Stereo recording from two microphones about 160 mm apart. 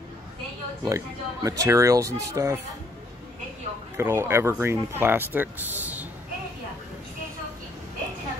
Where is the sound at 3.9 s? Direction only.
15° right (ahead or behind).